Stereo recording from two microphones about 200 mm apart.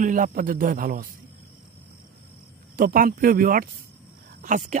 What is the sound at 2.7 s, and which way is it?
Speech, 45° right (ahead or behind).